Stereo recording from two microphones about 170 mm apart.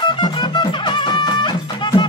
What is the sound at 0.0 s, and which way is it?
Music, 25° left (ahead or behind).